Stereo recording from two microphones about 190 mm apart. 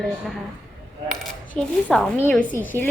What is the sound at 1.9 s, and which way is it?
Speech, 5° left (ahead or behind).